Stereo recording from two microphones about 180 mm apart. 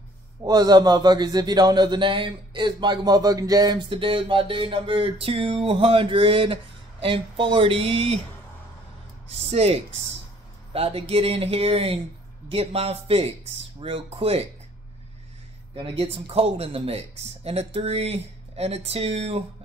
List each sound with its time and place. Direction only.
0.4 s a man's voice: 20° right (ahead or behind)
9.5 s speech: 35° right (ahead or behind)
15.7 s speech: 30° right (ahead or behind)